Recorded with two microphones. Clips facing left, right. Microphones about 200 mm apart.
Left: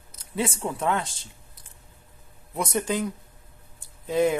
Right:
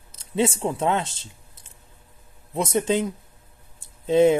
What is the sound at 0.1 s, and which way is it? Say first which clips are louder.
Speech: right 6 dB; 25° right (ahead or behind).